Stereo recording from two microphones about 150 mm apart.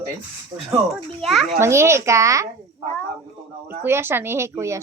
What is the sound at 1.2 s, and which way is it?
Speech, centre (ahead or behind).